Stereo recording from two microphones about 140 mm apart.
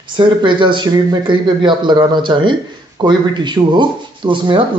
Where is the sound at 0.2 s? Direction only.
35° right (ahead or behind).